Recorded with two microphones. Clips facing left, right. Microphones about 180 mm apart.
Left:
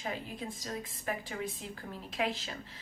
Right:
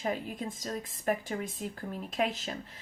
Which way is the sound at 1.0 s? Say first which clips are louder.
Right 6 dB; 45° right (ahead or behind).